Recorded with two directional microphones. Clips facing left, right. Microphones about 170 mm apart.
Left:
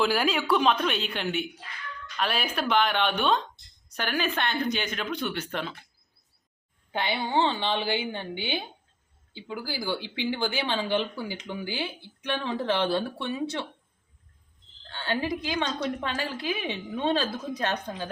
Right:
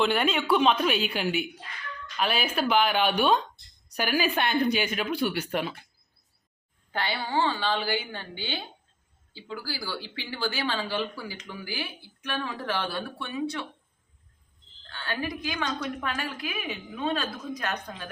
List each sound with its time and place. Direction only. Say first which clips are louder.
0.0 s speech: even; centre (ahead or behind)
6.9 s speech: left 2 dB; 20° left (ahead or behind)
14.8 s speech: left 4 dB; 25° left (ahead or behind)